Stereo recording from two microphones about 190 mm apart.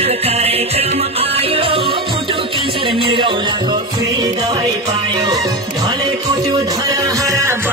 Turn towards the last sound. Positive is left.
turn(degrees=-15)  # may be behind; listen again after turning